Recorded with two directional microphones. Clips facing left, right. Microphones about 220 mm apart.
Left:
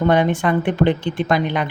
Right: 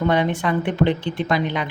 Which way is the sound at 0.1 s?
50° left (ahead or behind).